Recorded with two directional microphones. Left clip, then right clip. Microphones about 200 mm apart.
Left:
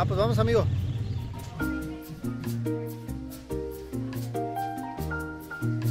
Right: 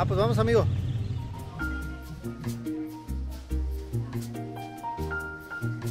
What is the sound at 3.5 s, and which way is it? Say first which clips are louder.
Music: left 8 dB; centre (ahead or behind).